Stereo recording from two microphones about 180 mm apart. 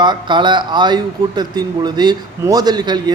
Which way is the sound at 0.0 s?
25° right (ahead or behind).